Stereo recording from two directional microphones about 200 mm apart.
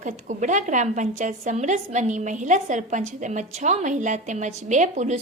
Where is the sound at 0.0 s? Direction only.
35° right (ahead or behind).